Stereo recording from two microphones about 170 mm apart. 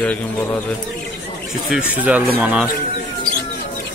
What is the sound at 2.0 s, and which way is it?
Speech, 10° right (ahead or behind).